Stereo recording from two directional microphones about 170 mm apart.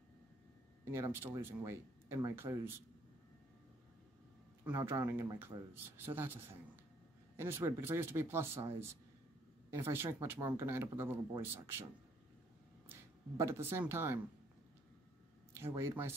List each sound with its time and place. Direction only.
0.9 s speech: 15° right (ahead or behind)
4.6 s speech: 15° right (ahead or behind)
13.4 s speech: 15° right (ahead or behind)
15.5 s speech: 15° right (ahead or behind)